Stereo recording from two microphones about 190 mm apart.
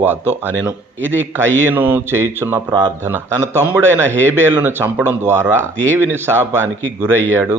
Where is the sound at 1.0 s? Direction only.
85° right.